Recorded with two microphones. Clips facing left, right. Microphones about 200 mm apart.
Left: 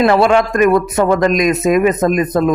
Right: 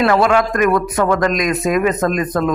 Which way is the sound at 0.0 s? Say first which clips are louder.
Left 3 dB; 25° left (ahead or behind).